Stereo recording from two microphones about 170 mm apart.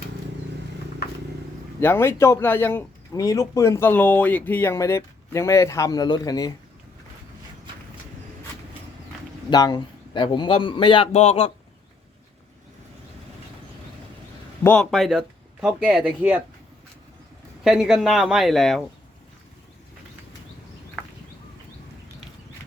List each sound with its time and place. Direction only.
1.0 s a sound: 75° left (ahead or behind)
1.8 s speech: 15° left (ahead or behind)
9.5 s a man's voice: 25° left (ahead or behind)
14.6 s speech: 5° left (ahead or behind)
17.6 s speech: centre (ahead or behind)